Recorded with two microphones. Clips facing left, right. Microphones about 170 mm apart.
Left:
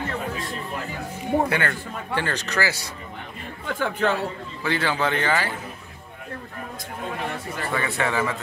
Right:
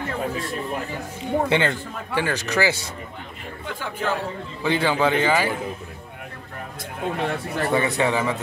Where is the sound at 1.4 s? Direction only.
25° right (ahead or behind).